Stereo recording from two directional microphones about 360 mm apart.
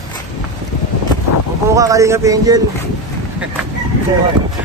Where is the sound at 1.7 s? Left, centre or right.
Centre.